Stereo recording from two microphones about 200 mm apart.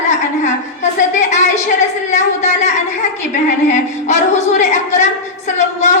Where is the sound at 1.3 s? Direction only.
35° left (ahead or behind).